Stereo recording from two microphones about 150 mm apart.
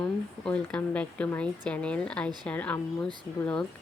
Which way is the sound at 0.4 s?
5° left (ahead or behind).